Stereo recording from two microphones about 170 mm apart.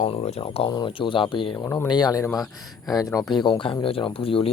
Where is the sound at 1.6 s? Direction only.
15° left (ahead or behind).